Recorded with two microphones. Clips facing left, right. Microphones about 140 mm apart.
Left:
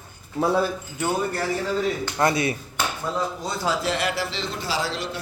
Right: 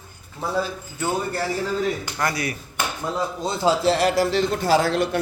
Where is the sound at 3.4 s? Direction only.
30° right (ahead or behind); by 5.2 s 55° right (ahead or behind).